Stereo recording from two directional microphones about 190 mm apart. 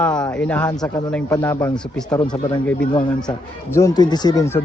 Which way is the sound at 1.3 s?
15° left (ahead or behind).